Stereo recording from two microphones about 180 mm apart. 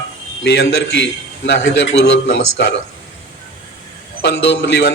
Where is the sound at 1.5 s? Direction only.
90° left.